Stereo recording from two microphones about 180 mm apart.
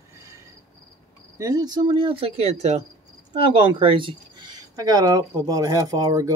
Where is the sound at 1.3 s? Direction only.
20° right (ahead or behind).